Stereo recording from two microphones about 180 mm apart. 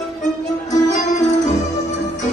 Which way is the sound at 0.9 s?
40° left (ahead or behind).